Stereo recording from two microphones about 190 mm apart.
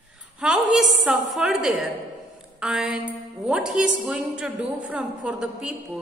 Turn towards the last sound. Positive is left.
turn(degrees=-5)  # may be behind; listen again after turning